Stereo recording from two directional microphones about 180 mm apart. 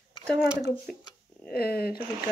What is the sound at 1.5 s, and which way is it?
Speech, 60° left (ahead or behind).